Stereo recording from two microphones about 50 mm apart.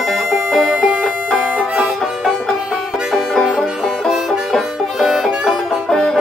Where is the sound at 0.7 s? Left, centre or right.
Centre.